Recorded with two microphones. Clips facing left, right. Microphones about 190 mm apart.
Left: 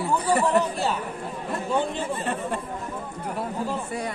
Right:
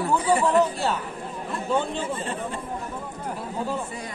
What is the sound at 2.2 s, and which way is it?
Chatter, 60° left (ahead or behind).